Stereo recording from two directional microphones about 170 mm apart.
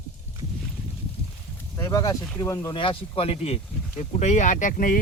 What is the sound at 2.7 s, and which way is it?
Speech, 30° left (ahead or behind).